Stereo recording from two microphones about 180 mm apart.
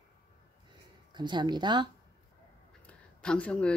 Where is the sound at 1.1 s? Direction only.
25° right (ahead or behind).